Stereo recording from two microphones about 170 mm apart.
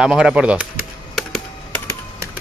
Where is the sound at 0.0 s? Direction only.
5° right (ahead or behind).